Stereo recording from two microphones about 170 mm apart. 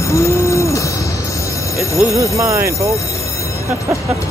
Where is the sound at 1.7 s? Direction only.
20° left (ahead or behind).